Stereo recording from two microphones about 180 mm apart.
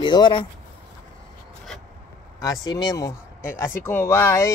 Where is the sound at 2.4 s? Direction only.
20° left (ahead or behind).